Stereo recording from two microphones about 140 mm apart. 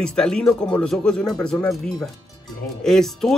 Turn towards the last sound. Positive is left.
turn(degrees=5)  # may be behind; listen again after turning